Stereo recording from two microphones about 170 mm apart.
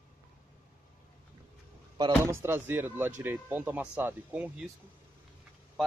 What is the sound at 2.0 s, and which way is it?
Speech, 20° right (ahead or behind).